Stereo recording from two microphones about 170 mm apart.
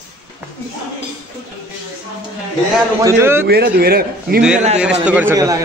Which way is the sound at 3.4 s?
65° right (ahead or behind).